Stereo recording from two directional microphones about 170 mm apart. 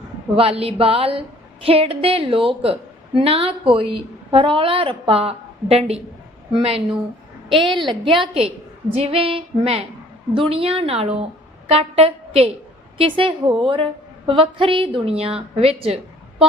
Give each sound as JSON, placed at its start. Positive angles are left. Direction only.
{"t": 0.3, "sound": "a woman's voice", "side_deg": -35}
{"t": 7.9, "sound": "a woman's voice", "side_deg": -30}